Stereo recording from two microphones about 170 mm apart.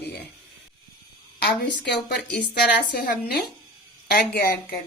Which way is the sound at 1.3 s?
65° left (ahead or behind).